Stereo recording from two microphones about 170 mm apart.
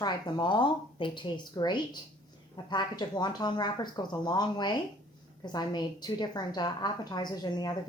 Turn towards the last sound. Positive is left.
turn(degrees=25)  # may be behind; listen again after turning